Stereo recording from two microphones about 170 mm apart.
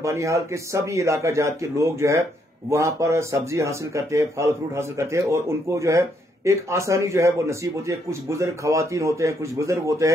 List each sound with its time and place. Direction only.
0.0 s speech: 20° right (ahead or behind)